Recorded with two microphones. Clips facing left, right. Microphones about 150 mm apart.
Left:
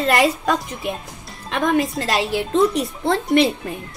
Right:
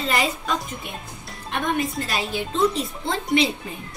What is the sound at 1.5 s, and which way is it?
A woman's voice, 90° left.